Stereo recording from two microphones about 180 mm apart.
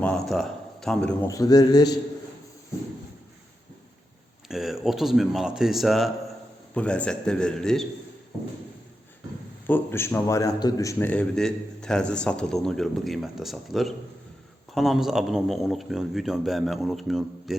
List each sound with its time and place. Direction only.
0.0 s a sound: 5° left (ahead or behind)
1.3 s a man's voice: 20° left (ahead or behind)
4.4 s a man's voice: centre (ahead or behind)
9.6 s a man's voice: 10° left (ahead or behind)